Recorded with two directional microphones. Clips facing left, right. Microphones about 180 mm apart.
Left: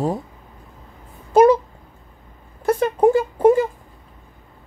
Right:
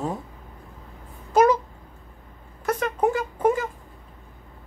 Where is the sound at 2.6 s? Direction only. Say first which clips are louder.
Left 7 dB; 30° left (ahead or behind).